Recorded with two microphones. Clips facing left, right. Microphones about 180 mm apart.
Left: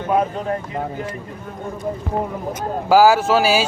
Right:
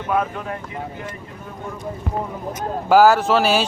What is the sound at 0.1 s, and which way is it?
Speech, 30° left (ahead or behind).